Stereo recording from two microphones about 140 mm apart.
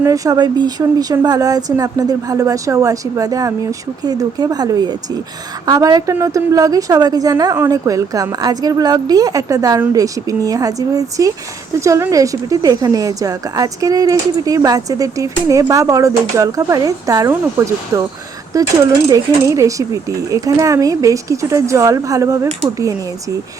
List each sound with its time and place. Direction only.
0.0 s speech: 25° right (ahead or behind)